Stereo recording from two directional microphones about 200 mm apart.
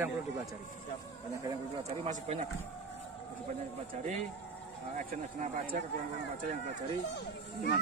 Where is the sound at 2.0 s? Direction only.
35° right (ahead or behind).